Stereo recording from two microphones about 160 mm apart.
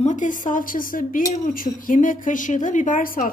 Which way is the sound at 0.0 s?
50° left (ahead or behind).